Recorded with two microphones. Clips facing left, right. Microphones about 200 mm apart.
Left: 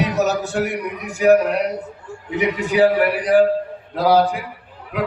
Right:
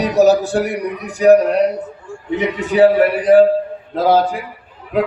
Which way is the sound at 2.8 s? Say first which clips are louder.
Right 5 dB; 25° right (ahead or behind).